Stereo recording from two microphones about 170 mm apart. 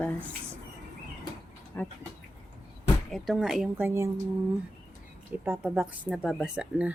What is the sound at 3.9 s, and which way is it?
Speech, 15° right (ahead or behind).